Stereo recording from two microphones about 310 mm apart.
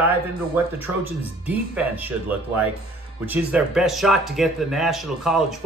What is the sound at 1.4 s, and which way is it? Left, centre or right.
Speech, centre.